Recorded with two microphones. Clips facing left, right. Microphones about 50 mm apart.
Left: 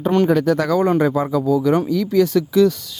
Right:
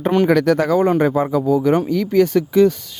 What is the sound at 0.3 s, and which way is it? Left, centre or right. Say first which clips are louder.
Speech: right 2 dB; right.